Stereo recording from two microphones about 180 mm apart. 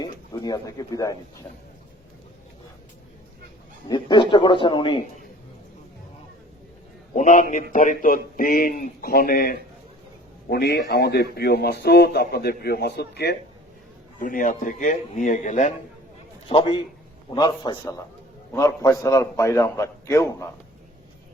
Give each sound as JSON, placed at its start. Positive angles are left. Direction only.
{"t": 0.0, "sound": "a sound", "side_deg": 20}
{"t": 3.8, "sound": "a man's voice", "side_deg": 25}
{"t": 7.2, "sound": "a man's voice", "side_deg": 45}
{"t": 14.2, "sound": "a man's voice", "side_deg": 50}
{"t": 16.5, "sound": "a man's voice", "side_deg": 30}